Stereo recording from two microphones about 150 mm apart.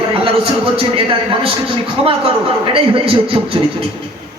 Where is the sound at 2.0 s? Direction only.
35° right (ahead or behind).